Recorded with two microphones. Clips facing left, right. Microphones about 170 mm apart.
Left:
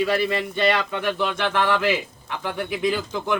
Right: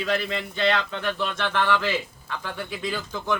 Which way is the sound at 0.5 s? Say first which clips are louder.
Even; 15° left (ahead or behind).